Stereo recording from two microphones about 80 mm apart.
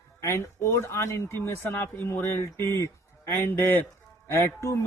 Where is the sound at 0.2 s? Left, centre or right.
Left.